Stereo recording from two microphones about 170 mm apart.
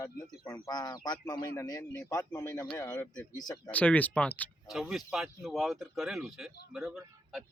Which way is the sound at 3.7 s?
10° left (ahead or behind).